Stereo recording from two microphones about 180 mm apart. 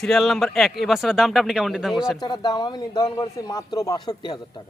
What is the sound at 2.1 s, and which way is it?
Speech, 25° left (ahead or behind).